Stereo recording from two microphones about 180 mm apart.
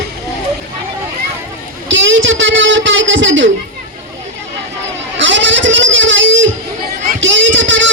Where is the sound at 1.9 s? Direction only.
90° right.